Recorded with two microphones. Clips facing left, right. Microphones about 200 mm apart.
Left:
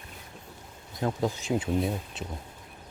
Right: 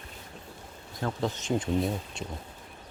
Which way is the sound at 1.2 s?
10° left (ahead or behind).